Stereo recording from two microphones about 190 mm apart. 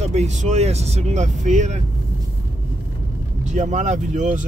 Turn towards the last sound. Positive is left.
turn(degrees=-40)  # may be behind; listen again after turning